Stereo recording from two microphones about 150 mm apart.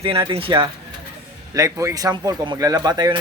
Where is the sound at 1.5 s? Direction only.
20° right (ahead or behind).